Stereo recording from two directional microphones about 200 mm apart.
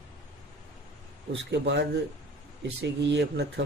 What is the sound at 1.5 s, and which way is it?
Speech, 60° right (ahead or behind).